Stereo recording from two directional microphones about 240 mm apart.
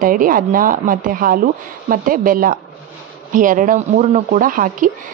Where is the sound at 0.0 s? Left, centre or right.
Right.